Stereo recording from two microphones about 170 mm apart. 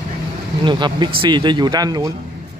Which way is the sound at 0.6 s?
25° right (ahead or behind).